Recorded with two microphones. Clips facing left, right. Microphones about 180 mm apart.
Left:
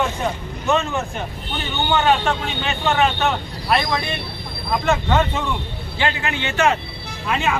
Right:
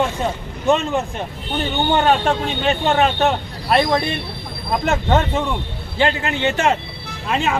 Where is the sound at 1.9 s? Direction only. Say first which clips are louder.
Right 1 dB; 45° right (ahead or behind).